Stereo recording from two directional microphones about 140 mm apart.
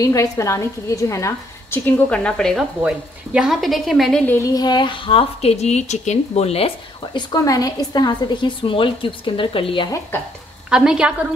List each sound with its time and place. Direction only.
0.0 s a woman's voice: 25° left (ahead or behind); by 2.6 s 5° left (ahead or behind)
2.8 s a woman's voice: 5° right (ahead or behind)
4.3 s a woman's voice: 25° left (ahead or behind); by 6.7 s 50° left (ahead or behind)
7.0 s a woman's voice: 30° left (ahead or behind)
10.7 s a woman's voice: 5° right (ahead or behind)